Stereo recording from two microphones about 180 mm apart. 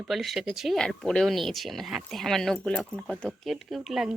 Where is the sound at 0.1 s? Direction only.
Centre (ahead or behind).